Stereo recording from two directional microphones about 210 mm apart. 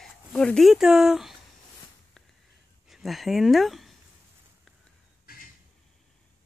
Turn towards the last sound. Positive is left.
turn(degrees=45)  # may be behind; listen again after turning